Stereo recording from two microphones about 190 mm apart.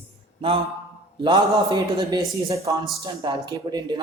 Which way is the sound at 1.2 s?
25° right (ahead or behind).